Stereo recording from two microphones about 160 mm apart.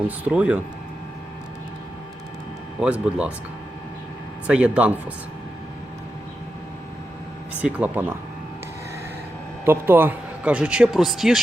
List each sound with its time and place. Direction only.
0.3 s speech: 5° right (ahead or behind)
2.8 s speech: 5° right (ahead or behind)
4.4 s speech: 5° right (ahead or behind)
7.6 s speech: 10° right (ahead or behind)
9.6 s speech: 15° right (ahead or behind)